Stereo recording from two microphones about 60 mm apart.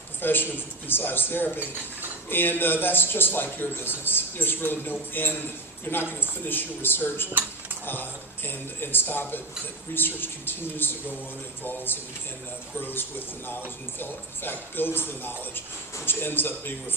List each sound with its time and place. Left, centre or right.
0.2 s a man's voice: left
1.5 s cutlery: right
2.3 s a man's voice: left
8.4 s a man's voice: left